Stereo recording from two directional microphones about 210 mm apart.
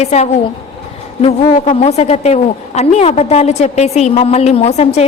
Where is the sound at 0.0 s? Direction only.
30° left (ahead or behind).